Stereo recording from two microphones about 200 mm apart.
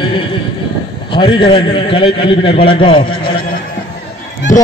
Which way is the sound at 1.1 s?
25° left (ahead or behind).